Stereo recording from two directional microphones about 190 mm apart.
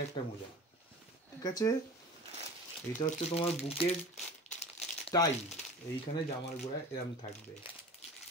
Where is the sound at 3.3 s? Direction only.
35° left (ahead or behind).